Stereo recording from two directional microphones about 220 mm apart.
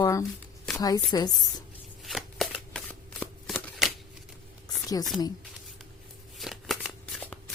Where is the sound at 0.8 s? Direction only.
15° left (ahead or behind).